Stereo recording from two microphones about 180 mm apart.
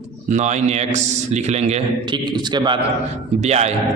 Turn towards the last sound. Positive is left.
turn(degrees=-35)  # may be behind; listen again after turning